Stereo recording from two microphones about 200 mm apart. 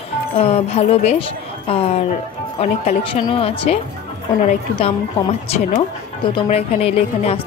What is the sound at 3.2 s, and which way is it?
A woman's voice, 25° left (ahead or behind).